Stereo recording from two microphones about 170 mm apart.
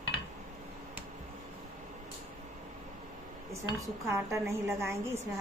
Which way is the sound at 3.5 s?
20° right (ahead or behind).